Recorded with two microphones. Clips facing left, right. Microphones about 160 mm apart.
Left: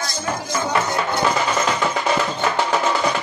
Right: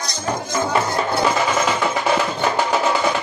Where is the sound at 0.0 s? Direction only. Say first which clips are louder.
Right 1 dB; 20° right (ahead or behind).